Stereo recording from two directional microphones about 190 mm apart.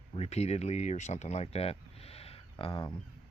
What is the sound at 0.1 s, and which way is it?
Speech, 35° left (ahead or behind).